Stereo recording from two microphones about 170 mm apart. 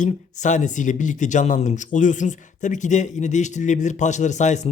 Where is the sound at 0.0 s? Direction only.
45° left (ahead or behind).